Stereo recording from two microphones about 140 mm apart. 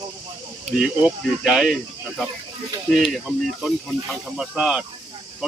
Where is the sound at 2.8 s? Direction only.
Centre (ahead or behind).